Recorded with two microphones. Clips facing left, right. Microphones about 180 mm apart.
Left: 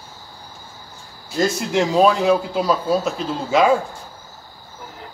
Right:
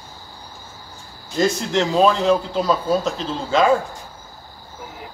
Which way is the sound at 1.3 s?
5° left (ahead or behind).